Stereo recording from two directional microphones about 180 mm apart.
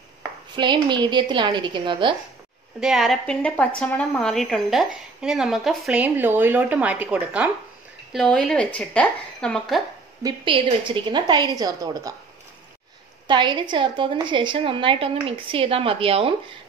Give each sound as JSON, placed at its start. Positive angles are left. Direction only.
{"t": 0.6, "sound": "a woman's voice", "side_deg": -25}
{"t": 2.8, "sound": "a woman's voice", "side_deg": 0}
{"t": 8.1, "sound": "a woman's voice", "side_deg": 5}
{"t": 10.2, "sound": "a woman's voice", "side_deg": -30}
{"t": 13.3, "sound": "a woman's voice", "side_deg": -25}